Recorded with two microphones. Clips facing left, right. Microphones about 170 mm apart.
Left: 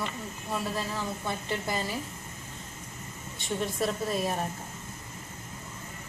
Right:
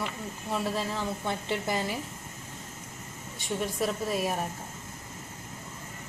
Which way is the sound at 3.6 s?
10° right (ahead or behind).